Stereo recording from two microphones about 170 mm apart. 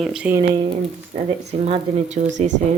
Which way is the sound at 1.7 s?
35° right (ahead or behind).